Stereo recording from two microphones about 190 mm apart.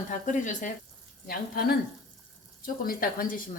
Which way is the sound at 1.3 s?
50° left (ahead or behind).